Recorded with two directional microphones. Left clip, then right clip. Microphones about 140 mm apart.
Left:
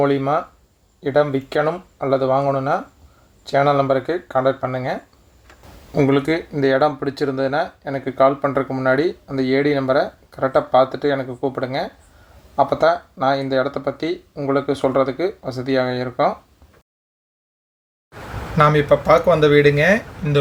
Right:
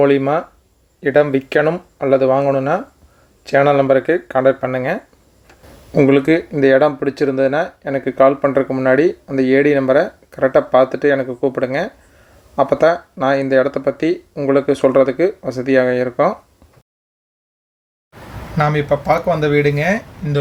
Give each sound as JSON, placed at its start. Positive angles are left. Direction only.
{"t": 0.0, "sound": "speech", "side_deg": -25}
{"t": 18.5, "sound": "speech", "side_deg": -5}